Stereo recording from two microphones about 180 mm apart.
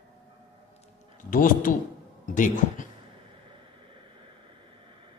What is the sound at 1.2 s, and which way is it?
Speech, 50° left (ahead or behind).